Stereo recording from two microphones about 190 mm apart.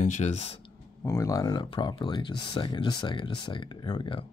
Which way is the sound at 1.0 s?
15° left (ahead or behind).